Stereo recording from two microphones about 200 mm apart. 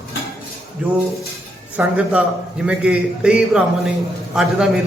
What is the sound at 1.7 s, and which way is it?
A man's voice, 5° right (ahead or behind).